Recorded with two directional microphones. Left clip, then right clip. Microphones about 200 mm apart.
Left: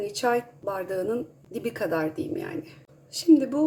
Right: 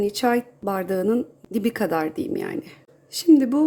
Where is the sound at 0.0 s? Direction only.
45° right (ahead or behind).